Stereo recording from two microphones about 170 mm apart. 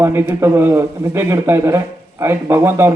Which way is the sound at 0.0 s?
15° right (ahead or behind).